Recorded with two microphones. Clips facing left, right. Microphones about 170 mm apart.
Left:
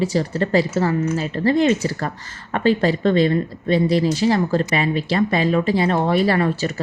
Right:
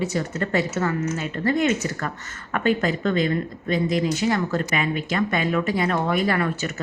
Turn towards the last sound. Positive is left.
turn(degrees=30)  # may be behind; listen again after turning